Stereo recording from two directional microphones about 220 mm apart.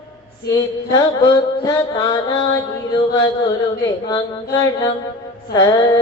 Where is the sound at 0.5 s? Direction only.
15° left (ahead or behind).